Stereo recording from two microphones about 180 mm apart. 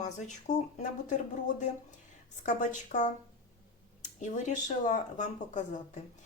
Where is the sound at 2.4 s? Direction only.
45° left (ahead or behind).